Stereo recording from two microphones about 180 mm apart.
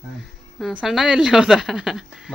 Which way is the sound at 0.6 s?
5° right (ahead or behind).